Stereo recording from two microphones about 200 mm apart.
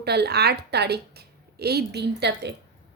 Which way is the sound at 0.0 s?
55° right (ahead or behind).